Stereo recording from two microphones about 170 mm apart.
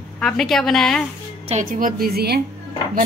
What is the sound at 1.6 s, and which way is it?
Speech, 55° right (ahead or behind).